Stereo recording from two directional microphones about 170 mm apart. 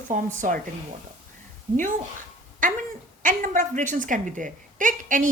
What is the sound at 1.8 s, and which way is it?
A woman's voice, 50° right (ahead or behind).